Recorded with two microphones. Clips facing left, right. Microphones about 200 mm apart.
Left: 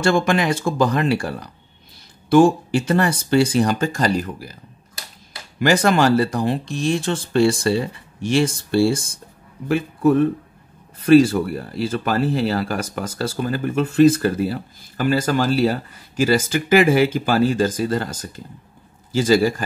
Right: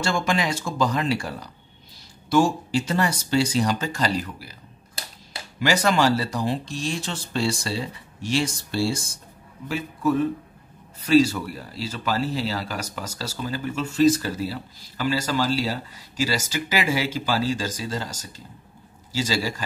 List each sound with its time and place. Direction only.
0.0 s speech: 55° left (ahead or behind)
5.6 s speech: 50° left (ahead or behind)